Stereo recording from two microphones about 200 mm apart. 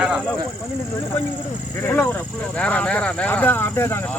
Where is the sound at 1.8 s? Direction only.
10° left (ahead or behind).